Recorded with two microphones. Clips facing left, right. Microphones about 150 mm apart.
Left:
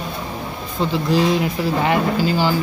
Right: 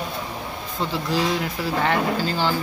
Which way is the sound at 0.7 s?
20° left (ahead or behind).